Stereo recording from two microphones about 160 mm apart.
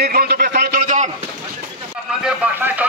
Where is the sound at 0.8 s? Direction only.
50° right (ahead or behind).